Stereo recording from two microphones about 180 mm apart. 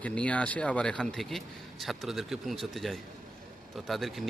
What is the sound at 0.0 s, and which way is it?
Speech, 5° left (ahead or behind).